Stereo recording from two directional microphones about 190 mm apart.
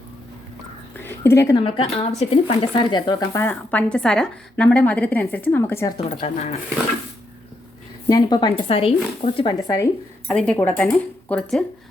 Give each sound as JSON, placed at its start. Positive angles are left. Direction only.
{"t": 0.9, "sound": "a sound", "side_deg": 10}
{"t": 1.5, "sound": "speech", "side_deg": 30}
{"t": 6.2, "sound": "speech", "side_deg": 35}
{"t": 8.0, "sound": "speech", "side_deg": 20}
{"t": 10.2, "sound": "speech", "side_deg": 5}